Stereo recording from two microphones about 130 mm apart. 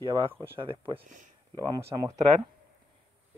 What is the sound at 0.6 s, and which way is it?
Speech, 40° right (ahead or behind).